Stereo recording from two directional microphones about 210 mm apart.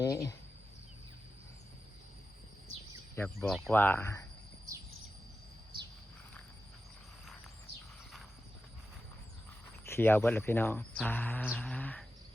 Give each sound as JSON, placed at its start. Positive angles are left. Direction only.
{"t": 0.0, "sound": "speech", "side_deg": 15}
{"t": 3.2, "sound": "speech", "side_deg": 0}
{"t": 9.8, "sound": "speech", "side_deg": 10}